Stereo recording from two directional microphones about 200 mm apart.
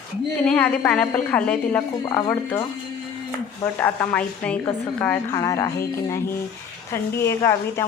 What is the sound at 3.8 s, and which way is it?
A woman's voice, 5° left (ahead or behind).